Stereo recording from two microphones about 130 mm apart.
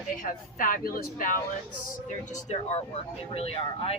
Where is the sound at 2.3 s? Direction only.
65° left (ahead or behind).